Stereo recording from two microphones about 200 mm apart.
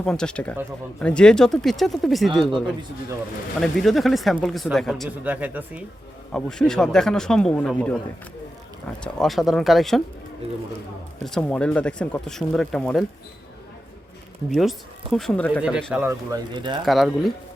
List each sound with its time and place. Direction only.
0.0 s speech: 5° left (ahead or behind)
3.6 s speech: centre (ahead or behind)
6.3 s speech: 5° left (ahead or behind)
9.0 s speech: centre (ahead or behind)
11.3 s speech: 5° left (ahead or behind)
14.5 s speech: centre (ahead or behind)
15.6 s speech: 5° right (ahead or behind)
16.0 s speech: 20° right (ahead or behind)
16.8 s speech: centre (ahead or behind)